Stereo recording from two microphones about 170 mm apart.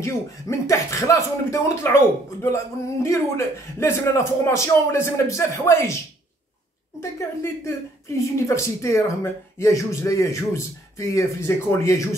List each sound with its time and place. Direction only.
0.0 s speech: 15° left (ahead or behind)
7.0 s speech: 15° left (ahead or behind)